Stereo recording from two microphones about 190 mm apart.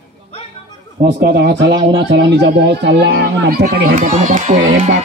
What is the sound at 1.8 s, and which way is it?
Speech, 25° right (ahead or behind).